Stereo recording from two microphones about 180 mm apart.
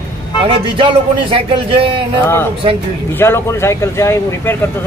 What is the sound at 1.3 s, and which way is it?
Speech, 30° right (ahead or behind).